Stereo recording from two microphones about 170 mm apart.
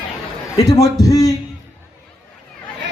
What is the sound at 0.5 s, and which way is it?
Speech, 20° left (ahead or behind).